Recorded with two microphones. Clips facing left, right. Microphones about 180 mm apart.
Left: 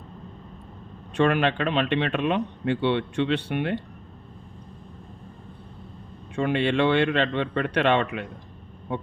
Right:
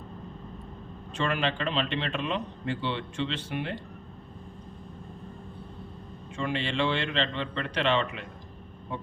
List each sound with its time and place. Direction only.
1.1 s speech: 60° left (ahead or behind)
6.3 s speech: 60° left (ahead or behind)
8.9 s honk: 60° left (ahead or behind)